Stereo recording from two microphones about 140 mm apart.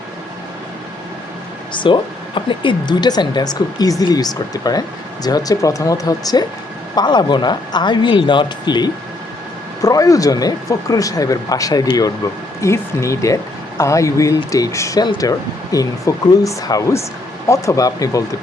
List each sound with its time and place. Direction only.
1.7 s a woman's voice: 35° left (ahead or behind)